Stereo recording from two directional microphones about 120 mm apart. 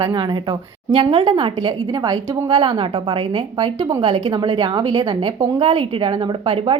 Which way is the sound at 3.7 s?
30° right (ahead or behind).